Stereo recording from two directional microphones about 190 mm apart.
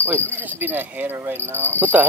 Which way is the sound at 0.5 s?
10° right (ahead or behind).